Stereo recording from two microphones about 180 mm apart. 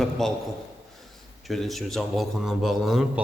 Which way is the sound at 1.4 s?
Centre (ahead or behind).